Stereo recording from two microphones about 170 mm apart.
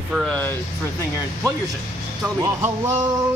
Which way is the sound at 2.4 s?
15° right (ahead or behind).